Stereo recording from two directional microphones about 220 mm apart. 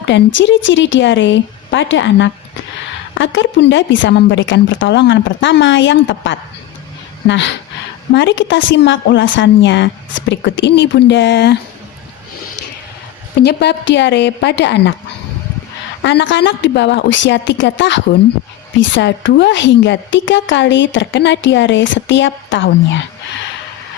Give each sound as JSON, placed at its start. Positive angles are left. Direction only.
{"t": 0.3, "sound": "a woman's voice", "side_deg": 60}
{"t": 13.4, "sound": "a woman's voice", "side_deg": 50}
{"t": 16.0, "sound": "a woman's voice", "side_deg": 55}